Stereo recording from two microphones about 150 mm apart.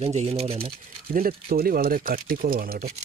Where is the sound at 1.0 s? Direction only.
80° right.